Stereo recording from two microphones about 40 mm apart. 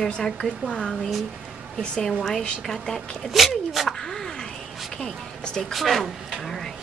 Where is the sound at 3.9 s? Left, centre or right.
Centre.